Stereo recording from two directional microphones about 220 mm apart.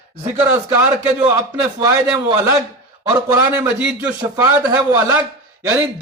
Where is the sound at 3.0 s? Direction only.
15° right (ahead or behind).